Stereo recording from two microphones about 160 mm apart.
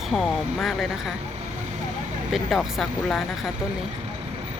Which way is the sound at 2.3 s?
Centre (ahead or behind).